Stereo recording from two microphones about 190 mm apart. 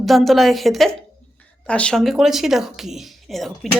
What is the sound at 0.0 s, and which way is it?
Speech, centre (ahead or behind).